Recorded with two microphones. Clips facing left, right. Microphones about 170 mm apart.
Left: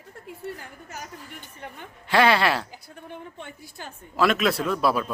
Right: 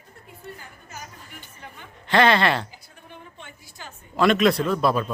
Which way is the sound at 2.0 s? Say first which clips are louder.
Right 1 dB; 5° left (ahead or behind).